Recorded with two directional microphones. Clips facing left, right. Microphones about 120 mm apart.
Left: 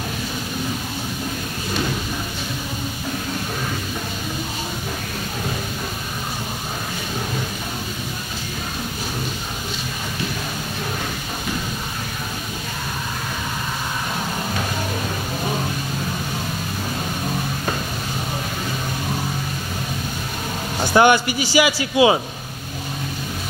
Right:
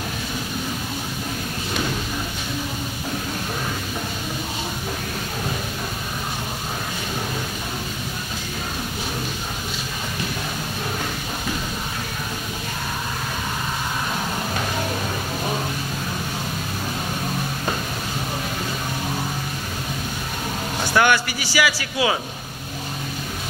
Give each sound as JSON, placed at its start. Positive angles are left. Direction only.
{"t": 20.9, "sound": "speech", "side_deg": 20}